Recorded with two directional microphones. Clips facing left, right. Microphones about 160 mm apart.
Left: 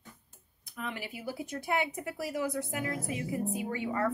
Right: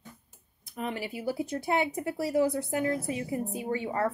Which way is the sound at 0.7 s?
30° right (ahead or behind).